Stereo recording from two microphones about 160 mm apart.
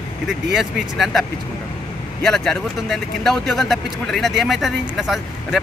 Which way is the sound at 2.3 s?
Centre (ahead or behind).